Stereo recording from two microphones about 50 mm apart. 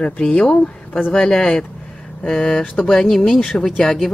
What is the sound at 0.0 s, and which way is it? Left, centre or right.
Speech, left.